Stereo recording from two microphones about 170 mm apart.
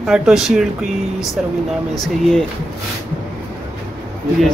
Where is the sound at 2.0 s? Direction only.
5° left (ahead or behind).